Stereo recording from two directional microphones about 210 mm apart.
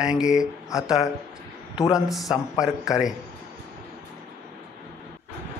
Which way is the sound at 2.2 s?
15° left (ahead or behind).